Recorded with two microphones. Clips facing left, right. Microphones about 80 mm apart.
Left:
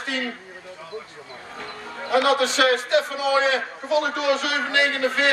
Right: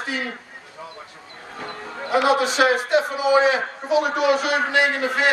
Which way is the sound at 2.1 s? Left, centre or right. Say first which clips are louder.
Right 1 dB; centre.